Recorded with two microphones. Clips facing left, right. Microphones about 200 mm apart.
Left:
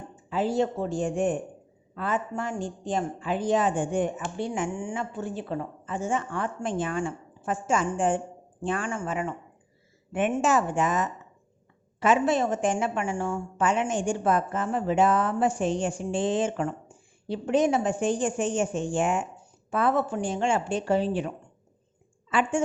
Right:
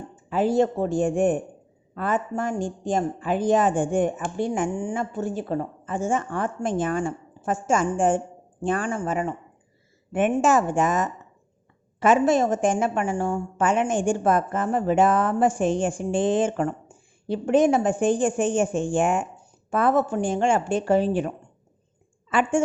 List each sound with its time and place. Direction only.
0.3 s a woman's voice: 50° right (ahead or behind)